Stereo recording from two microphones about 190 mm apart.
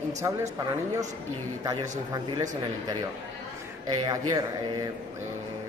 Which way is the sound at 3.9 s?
20° right (ahead or behind).